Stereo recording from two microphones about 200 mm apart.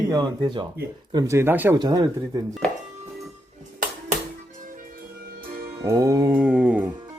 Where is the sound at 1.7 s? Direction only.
20° right (ahead or behind).